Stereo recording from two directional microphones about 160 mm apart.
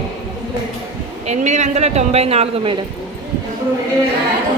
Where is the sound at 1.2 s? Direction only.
45° right (ahead or behind).